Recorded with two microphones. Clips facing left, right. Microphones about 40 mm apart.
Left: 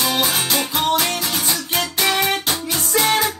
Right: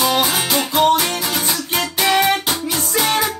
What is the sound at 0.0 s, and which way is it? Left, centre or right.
Music, centre.